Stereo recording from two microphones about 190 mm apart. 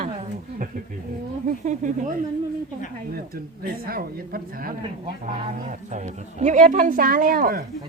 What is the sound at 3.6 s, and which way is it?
Speech, 50° right (ahead or behind).